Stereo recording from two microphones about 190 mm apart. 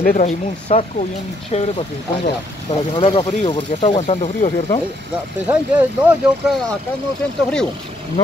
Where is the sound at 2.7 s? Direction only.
35° left (ahead or behind).